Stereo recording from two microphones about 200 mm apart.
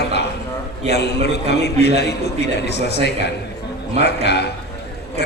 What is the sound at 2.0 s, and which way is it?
Speech, 55° left (ahead or behind).